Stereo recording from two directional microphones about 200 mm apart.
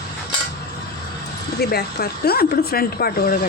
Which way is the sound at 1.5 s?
50° left (ahead or behind).